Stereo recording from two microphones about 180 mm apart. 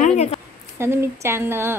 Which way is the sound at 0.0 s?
40° left (ahead or behind).